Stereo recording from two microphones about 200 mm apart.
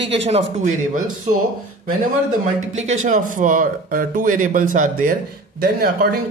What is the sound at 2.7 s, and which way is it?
Speech, 35° right (ahead or behind).